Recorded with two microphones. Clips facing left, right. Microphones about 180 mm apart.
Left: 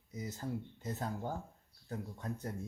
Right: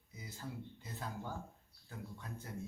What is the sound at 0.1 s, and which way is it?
Speech, 45° left (ahead or behind).